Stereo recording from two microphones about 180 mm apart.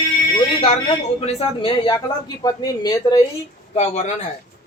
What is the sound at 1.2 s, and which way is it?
A man's voice, 30° left (ahead or behind).